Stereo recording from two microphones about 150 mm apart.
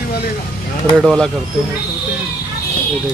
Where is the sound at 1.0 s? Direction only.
5° left (ahead or behind).